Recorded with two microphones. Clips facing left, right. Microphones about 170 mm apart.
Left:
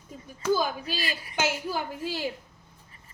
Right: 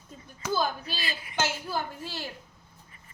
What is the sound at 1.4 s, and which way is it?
Speech, 15° left (ahead or behind).